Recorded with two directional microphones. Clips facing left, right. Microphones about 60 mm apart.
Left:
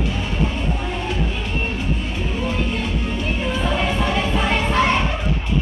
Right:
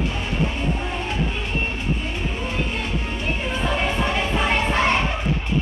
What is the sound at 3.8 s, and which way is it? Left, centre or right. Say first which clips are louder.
Music: left 2 dB; centre.